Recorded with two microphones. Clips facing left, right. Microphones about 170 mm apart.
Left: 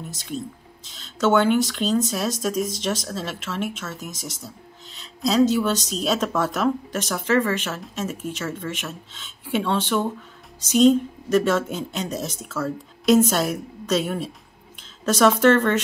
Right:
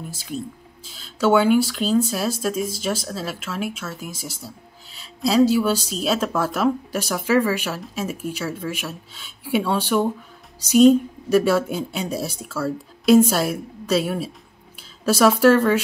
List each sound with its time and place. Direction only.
0.9 s a woman's voice: 5° right (ahead or behind)